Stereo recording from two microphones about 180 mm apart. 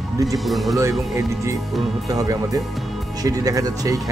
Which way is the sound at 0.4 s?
Centre (ahead or behind).